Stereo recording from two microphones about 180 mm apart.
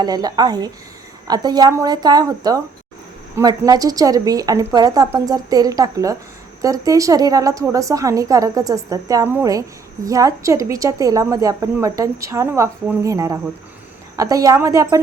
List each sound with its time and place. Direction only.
0.0 s a woman's voice: 20° right (ahead or behind)